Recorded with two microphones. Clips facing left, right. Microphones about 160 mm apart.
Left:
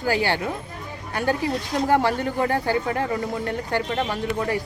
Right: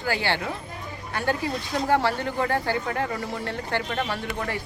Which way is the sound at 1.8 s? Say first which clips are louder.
Left 2 dB; 15° left (ahead or behind).